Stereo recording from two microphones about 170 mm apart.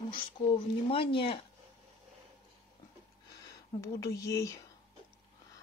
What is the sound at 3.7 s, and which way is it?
Speech, 20° left (ahead or behind).